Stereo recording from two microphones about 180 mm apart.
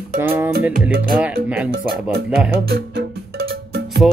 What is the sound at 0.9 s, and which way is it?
Speech, 55° right (ahead or behind).